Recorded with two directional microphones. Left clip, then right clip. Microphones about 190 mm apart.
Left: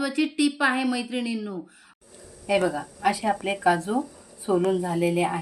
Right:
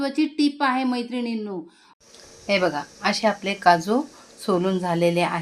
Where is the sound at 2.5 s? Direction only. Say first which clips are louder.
Right 2 dB; 35° right (ahead or behind).